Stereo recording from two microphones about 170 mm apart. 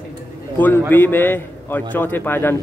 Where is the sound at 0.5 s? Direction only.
10° left (ahead or behind).